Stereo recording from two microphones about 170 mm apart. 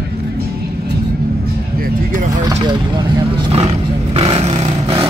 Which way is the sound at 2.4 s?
25° right (ahead or behind).